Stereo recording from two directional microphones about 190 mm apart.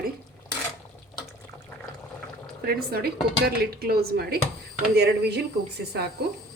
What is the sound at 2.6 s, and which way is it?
Speech, 55° right (ahead or behind).